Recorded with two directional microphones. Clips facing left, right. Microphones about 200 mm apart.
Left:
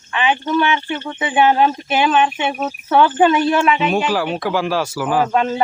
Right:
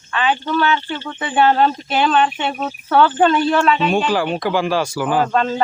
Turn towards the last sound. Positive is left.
turn(degrees=10)  # may be behind; listen again after turning